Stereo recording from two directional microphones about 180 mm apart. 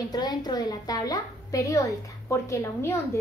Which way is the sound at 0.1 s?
25° left (ahead or behind).